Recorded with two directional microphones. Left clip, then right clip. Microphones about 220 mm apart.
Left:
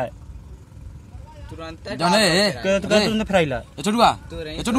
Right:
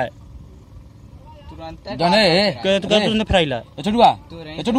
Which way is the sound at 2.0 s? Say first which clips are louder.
Right 3 dB; 15° right (ahead or behind).